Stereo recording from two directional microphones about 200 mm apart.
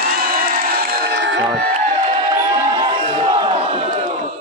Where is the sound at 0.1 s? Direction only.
50° right (ahead or behind).